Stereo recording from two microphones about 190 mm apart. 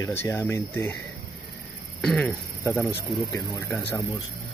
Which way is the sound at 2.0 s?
5° left (ahead or behind).